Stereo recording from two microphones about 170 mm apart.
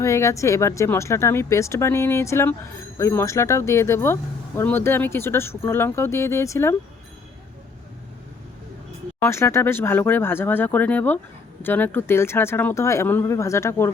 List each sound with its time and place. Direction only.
0.0 s speech: 15° left (ahead or behind)
9.2 s speech: 15° left (ahead or behind)